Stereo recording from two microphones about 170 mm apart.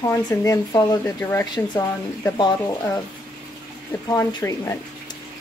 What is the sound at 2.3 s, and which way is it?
Speech, 25° left (ahead or behind).